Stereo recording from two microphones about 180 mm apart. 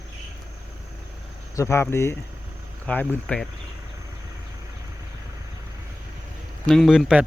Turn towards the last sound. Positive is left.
turn(degrees=-5)  # may be behind; listen again after turning